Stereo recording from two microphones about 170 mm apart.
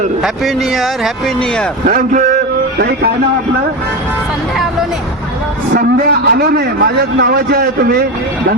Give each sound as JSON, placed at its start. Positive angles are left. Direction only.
{"t": 0.2, "sound": "speech", "side_deg": 0}
{"t": 1.9, "sound": "a man's voice", "side_deg": -50}
{"t": 5.7, "sound": "a man's voice", "side_deg": -60}